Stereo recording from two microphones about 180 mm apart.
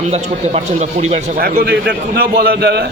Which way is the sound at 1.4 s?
60° right (ahead or behind).